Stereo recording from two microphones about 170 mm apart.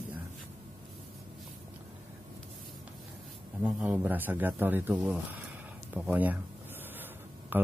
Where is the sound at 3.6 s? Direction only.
10° right (ahead or behind).